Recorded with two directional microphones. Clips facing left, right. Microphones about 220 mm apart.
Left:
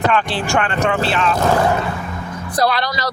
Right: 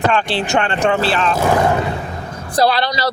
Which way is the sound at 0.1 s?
25° right (ahead or behind).